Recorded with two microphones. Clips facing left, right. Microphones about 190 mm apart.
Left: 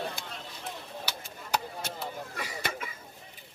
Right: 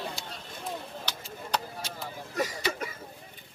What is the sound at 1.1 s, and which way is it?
Chop, 10° left (ahead or behind).